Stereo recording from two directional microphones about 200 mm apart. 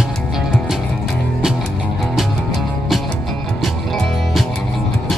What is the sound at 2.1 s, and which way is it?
Music, centre (ahead or behind).